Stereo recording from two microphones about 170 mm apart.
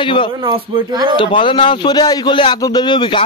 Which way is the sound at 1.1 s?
30° left (ahead or behind).